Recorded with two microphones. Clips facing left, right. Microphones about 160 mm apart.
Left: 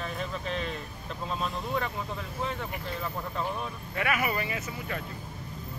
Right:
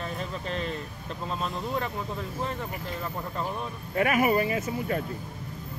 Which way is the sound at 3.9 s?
40° right (ahead or behind).